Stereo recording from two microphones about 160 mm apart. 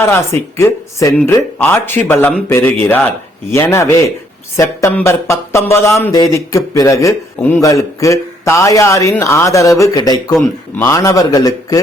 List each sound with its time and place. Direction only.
0.0 s a man's voice: 15° left (ahead or behind)